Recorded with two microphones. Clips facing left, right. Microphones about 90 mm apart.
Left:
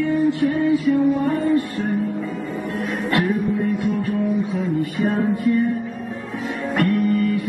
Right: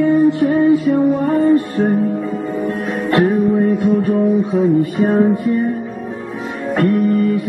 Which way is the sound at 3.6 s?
30° right (ahead or behind).